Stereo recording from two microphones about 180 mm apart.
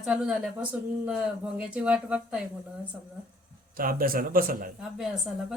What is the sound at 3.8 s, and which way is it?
Speech, 55° right (ahead or behind).